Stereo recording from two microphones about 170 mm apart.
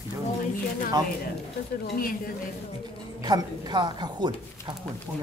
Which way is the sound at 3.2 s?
25° right (ahead or behind).